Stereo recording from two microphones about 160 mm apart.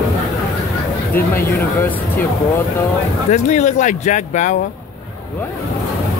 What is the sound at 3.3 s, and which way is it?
Speech, 45° left (ahead or behind).